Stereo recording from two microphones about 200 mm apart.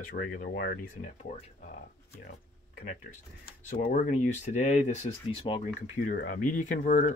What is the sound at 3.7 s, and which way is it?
Speech, 45° left (ahead or behind).